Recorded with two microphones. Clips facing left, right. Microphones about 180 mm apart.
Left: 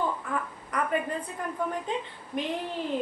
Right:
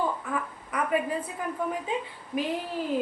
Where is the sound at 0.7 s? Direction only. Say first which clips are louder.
Even; 5° right (ahead or behind).